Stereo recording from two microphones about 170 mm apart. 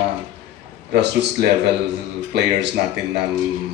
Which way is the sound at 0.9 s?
80° right.